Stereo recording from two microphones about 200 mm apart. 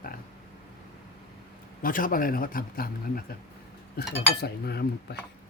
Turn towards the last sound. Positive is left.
turn(degrees=55)  # may be behind; listen again after turning